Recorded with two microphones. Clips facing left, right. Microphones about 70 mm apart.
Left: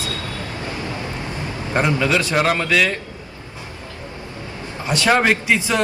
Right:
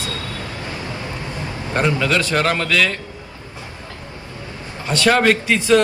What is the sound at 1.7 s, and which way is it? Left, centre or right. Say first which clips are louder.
A man's voice: even; centre.